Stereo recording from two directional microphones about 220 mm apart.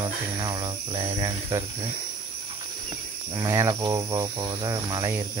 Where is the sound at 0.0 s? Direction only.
20° right (ahead or behind).